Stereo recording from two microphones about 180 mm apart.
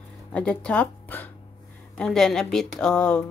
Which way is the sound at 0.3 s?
5° left (ahead or behind).